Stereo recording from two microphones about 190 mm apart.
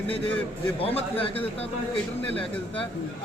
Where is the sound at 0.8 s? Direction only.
30° left (ahead or behind).